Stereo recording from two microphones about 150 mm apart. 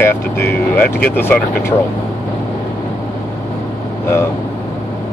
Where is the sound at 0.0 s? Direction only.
15° left (ahead or behind).